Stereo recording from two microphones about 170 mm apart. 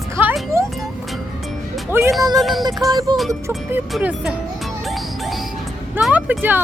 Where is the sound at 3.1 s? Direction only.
Centre (ahead or behind).